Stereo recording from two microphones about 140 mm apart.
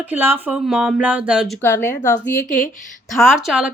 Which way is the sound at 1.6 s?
15° left (ahead or behind).